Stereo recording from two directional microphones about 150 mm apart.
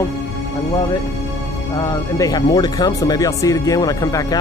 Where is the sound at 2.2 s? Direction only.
25° left (ahead or behind).